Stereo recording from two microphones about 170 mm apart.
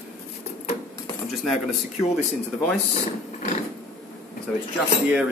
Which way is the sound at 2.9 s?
40° left (ahead or behind).